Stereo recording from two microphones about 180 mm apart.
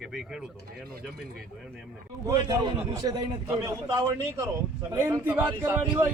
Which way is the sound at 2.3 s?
20° right (ahead or behind).